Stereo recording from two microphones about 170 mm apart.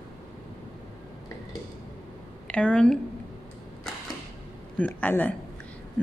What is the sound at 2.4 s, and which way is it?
Speech, 5° left (ahead or behind).